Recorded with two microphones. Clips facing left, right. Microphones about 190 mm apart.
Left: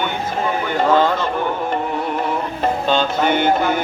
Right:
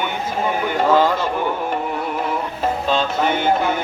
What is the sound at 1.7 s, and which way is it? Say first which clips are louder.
Music: left 2 dB; 5° right (ahead or behind).